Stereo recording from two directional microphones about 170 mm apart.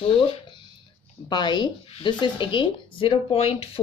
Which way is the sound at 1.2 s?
25° left (ahead or behind).